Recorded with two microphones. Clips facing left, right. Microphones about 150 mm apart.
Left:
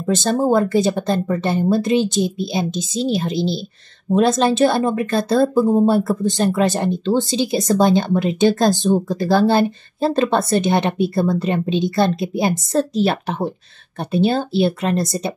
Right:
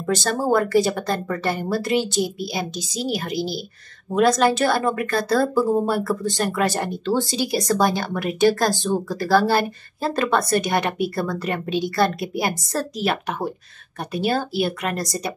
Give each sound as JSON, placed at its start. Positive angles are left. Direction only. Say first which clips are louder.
{"t": 0.0, "sound": "speech", "louder": "left 4 dB", "side_deg": 25}